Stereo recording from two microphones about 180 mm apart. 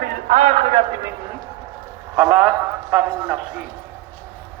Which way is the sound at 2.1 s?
10° right (ahead or behind).